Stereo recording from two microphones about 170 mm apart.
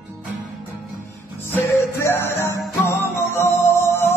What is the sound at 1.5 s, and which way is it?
Music, 15° left (ahead or behind).